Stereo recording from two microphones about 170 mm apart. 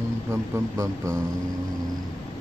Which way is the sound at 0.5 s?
20° right (ahead or behind).